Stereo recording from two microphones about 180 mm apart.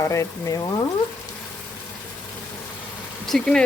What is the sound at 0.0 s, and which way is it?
Speech, 15° left (ahead or behind).